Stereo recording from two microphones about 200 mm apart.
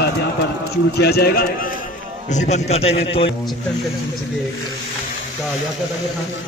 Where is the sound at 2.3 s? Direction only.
35° left (ahead or behind).